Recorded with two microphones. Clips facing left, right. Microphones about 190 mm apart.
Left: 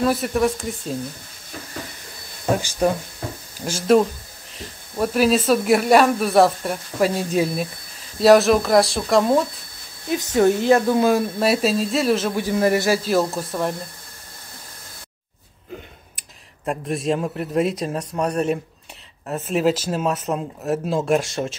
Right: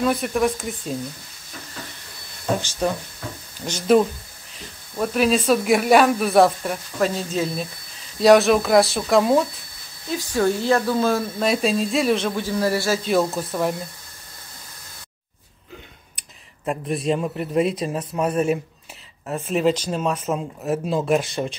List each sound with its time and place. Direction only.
0.0 s speech: centre (ahead or behind)
2.5 s a man's voice: 10° left (ahead or behind)
10.0 s speech: 20° left (ahead or behind)
11.3 s speech: 5° left (ahead or behind)
12.4 s a man's voice: 15° left (ahead or behind)
13.0 s speech: centre (ahead or behind)
16.2 s speech: centre (ahead or behind)